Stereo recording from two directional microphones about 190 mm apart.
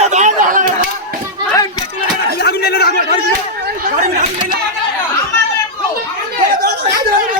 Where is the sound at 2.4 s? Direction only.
55° left (ahead or behind).